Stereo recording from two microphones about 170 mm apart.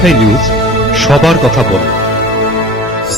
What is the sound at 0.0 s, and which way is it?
Speech, centre (ahead or behind).